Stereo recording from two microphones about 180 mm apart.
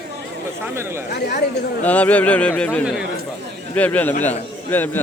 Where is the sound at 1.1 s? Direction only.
65° left (ahead or behind).